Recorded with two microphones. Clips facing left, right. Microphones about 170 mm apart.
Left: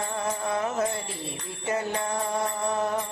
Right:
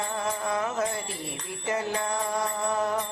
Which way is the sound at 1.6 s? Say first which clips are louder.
Left 1 dB; 25° left (ahead or behind).